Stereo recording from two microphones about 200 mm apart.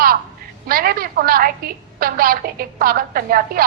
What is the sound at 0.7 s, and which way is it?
A woman's voice, 45° right (ahead or behind).